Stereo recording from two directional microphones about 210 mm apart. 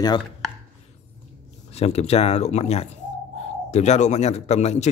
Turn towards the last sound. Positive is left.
turn(degrees=30)  # may be behind; listen again after turning